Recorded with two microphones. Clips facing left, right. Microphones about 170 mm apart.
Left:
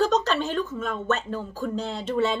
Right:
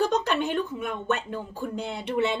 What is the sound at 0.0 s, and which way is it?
A woman's voice, 15° right (ahead or behind).